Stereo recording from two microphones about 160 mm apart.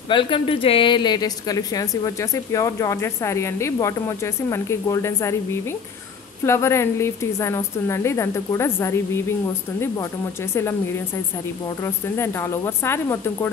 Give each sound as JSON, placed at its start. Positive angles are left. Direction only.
{"t": 0.1, "sound": "a woman's voice", "side_deg": 30}
{"t": 10.5, "sound": "a woman's voice", "side_deg": 15}
{"t": 11.8, "sound": "a woman's voice", "side_deg": 15}